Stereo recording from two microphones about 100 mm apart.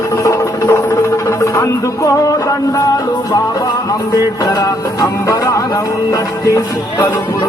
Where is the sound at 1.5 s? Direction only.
35° left (ahead or behind).